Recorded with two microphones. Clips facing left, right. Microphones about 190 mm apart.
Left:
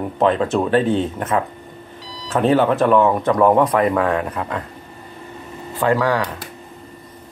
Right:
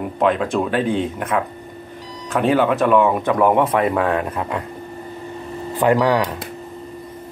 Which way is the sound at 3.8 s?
25° right (ahead or behind).